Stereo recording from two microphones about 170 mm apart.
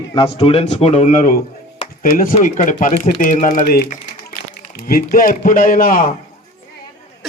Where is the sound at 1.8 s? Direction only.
50° left (ahead or behind).